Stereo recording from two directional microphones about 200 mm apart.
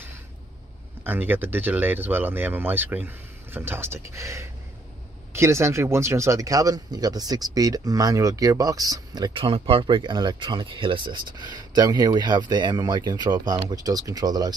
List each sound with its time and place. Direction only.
1.0 s speech: 10° right (ahead or behind)